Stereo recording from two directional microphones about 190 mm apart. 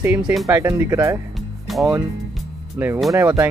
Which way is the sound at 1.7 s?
Centre (ahead or behind).